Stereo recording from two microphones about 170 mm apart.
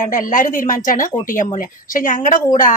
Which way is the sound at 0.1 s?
50° left (ahead or behind).